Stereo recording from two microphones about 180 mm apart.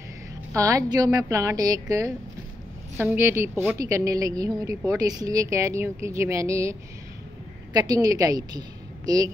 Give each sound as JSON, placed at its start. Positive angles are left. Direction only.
{"t": 0.5, "sound": "a woman's voice", "side_deg": -20}